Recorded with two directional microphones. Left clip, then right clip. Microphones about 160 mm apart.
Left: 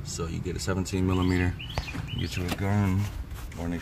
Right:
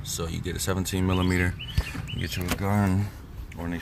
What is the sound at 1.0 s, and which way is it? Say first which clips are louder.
Speech: right 2 dB; 10° right (ahead or behind).